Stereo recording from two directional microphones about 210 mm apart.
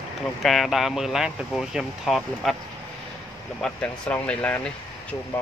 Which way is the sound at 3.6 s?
5° left (ahead or behind).